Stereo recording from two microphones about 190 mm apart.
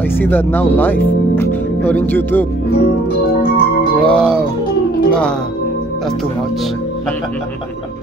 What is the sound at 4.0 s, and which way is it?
Music, 5° left (ahead or behind).